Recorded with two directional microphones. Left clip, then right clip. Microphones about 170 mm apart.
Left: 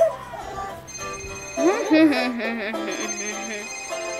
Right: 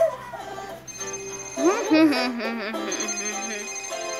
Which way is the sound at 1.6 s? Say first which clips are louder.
Left 2 dB; 15° right (ahead or behind).